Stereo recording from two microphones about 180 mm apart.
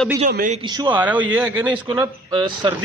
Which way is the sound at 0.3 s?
50° right (ahead or behind).